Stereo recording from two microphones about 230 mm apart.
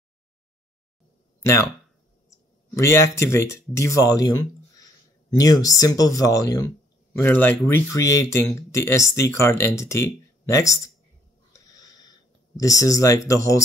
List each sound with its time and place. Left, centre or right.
1.4 s speech: centre
2.2 s a sound: centre
3.7 s speech: centre
12.5 s speech: centre